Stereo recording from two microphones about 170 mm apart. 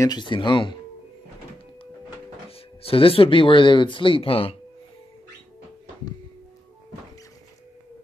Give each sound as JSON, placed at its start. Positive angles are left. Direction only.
{"t": 0.0, "sound": "speech", "side_deg": 25}
{"t": 2.8, "sound": "speech", "side_deg": 35}